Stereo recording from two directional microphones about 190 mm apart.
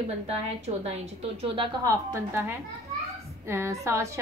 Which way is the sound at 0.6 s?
35° right (ahead or behind).